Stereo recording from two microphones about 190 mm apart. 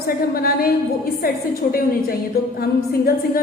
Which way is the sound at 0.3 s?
50° left (ahead or behind).